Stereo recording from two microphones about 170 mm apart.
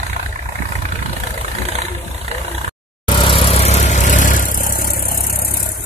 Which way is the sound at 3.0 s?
30° left (ahead or behind).